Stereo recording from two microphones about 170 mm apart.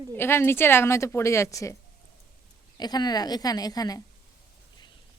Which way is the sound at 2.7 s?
25° left (ahead or behind).